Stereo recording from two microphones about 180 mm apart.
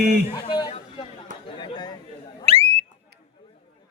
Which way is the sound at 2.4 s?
30° right (ahead or behind).